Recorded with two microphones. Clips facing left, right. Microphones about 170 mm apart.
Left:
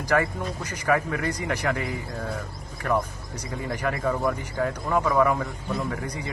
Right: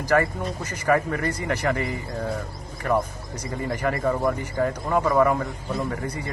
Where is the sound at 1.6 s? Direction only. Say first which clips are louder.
Right 2 dB; centre (ahead or behind).